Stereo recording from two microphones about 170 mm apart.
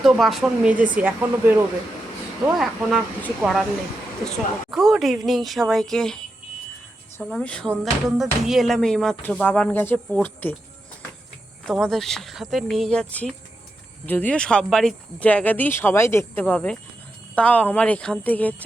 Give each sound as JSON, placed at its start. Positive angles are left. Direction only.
{"t": 0.0, "sound": "speech", "side_deg": 0}
{"t": 4.7, "sound": "speech", "side_deg": 0}
{"t": 7.2, "sound": "speech", "side_deg": 5}
{"t": 11.6, "sound": "speech", "side_deg": 5}